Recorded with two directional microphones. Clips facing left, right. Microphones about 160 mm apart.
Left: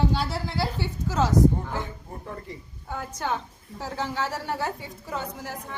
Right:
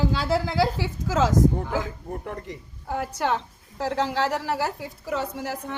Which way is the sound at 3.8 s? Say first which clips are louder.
Right 5 dB; 90° right.